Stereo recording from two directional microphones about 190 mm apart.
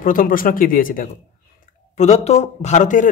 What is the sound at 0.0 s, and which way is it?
Speech, 45° left (ahead or behind).